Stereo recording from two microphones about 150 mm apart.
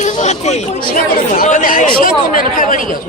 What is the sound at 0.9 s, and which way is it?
Speech, 65° left (ahead or behind).